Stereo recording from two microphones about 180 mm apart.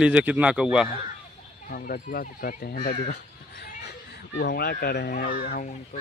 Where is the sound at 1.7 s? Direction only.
55° left (ahead or behind).